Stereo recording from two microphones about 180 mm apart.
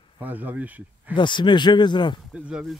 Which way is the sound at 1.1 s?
25° left (ahead or behind).